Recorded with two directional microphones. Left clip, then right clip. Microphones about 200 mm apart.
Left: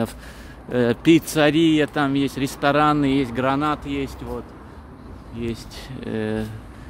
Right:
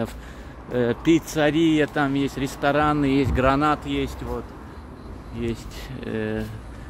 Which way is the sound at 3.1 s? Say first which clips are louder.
Right 1 dB; centre (ahead or behind).